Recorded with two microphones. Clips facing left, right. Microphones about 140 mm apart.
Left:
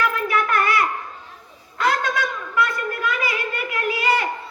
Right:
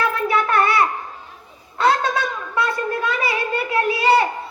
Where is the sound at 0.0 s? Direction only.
30° right (ahead or behind).